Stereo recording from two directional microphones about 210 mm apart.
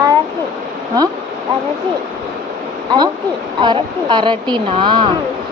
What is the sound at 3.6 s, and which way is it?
A woman's voice, 20° right (ahead or behind).